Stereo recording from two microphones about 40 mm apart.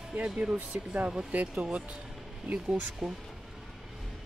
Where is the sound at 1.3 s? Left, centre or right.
Right.